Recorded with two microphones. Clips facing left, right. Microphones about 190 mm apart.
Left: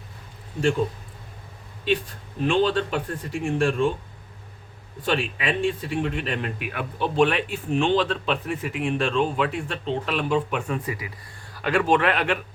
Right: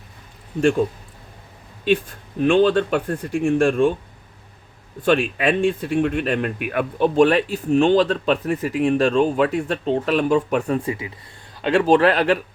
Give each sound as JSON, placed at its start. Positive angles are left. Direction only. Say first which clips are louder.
{"t": 2.4, "sound": "speech", "louder": "right 6 dB", "side_deg": -55}
{"t": 5.0, "sound": "speech", "louder": "right 7 dB", "side_deg": -50}
{"t": 10.8, "sound": "speech", "louder": "right 5 dB", "side_deg": -25}